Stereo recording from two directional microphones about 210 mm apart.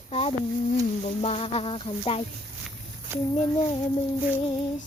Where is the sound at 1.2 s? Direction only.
30° left (ahead or behind).